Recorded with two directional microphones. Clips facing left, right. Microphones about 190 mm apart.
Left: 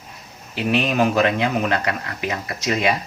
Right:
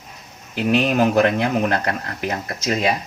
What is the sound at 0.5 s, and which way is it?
Speech, 50° right (ahead or behind).